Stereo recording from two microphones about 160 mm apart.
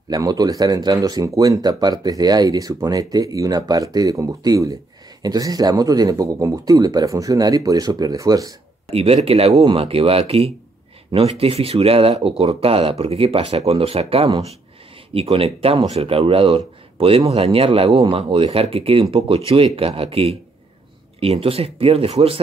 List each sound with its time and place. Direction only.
0.1 s speech: 25° right (ahead or behind)
8.9 s speech: 40° right (ahead or behind)